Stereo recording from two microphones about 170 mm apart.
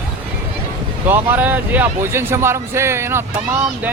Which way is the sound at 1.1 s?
10° right (ahead or behind).